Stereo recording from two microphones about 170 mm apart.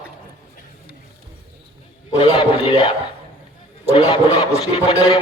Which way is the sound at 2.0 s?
30° left (ahead or behind).